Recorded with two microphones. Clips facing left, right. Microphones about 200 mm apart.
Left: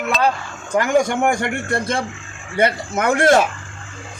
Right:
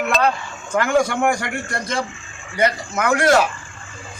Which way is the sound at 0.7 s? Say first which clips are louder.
Left 1 dB; 15° left (ahead or behind).